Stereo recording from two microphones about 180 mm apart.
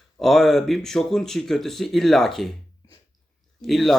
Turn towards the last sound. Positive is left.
turn(degrees=0)  # may be behind; listen again after turning